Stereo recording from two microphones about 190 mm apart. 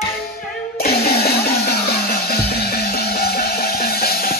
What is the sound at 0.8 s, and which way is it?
Music, 55° left (ahead or behind).